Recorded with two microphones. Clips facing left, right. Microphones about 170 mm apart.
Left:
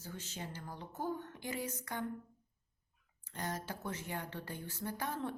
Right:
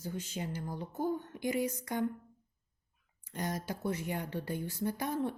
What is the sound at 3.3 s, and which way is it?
Speech, 15° right (ahead or behind).